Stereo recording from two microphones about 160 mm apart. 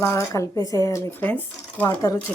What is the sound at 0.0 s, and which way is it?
Speech, 20° left (ahead or behind).